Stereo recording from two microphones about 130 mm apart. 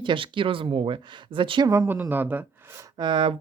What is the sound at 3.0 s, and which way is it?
Speech, 35° right (ahead or behind).